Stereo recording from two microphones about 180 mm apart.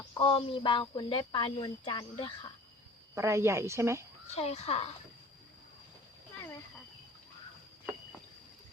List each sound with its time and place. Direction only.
0.2 s speech: 30° left (ahead or behind)
3.2 s a woman's voice: 15° right (ahead or behind)
4.3 s speech: 35° left (ahead or behind)